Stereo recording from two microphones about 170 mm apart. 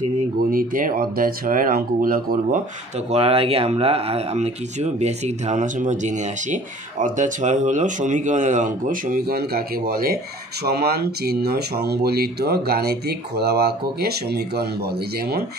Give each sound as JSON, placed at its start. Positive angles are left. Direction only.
{"t": 0.5, "sound": "speech", "side_deg": -55}
{"t": 3.1, "sound": "speech", "side_deg": -35}